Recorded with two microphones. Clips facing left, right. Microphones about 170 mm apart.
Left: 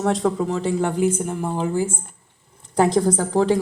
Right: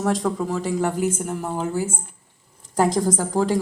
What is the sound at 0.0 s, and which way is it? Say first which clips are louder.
Speech: left 2 dB; centre (ahead or behind).